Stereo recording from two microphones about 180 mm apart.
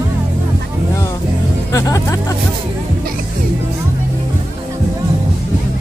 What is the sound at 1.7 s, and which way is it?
Speech, 20° left (ahead or behind).